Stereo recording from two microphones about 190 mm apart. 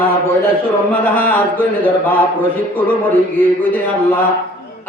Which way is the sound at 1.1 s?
10° left (ahead or behind).